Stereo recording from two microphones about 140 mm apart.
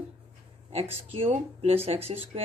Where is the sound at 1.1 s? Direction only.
45° right (ahead or behind).